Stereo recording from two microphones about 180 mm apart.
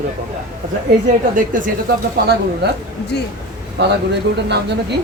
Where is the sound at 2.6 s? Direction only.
65° right (ahead or behind).